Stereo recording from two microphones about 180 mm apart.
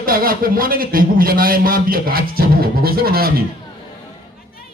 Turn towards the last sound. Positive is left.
turn(degrees=-55)  # may be behind; listen again after turning